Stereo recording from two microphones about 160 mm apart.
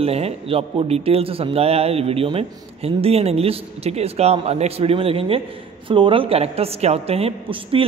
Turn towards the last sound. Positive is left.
turn(degrees=-35)  # may be behind; listen again after turning